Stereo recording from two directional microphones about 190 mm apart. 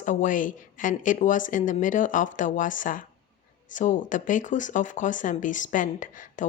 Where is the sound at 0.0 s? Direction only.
40° left (ahead or behind).